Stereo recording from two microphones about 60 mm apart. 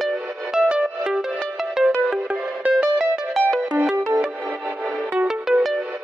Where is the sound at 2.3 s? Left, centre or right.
Right.